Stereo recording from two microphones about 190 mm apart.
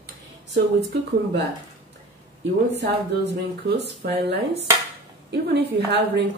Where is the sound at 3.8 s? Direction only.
60° right (ahead or behind).